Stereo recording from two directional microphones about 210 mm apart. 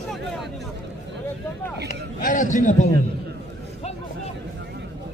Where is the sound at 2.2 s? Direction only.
40° left (ahead or behind).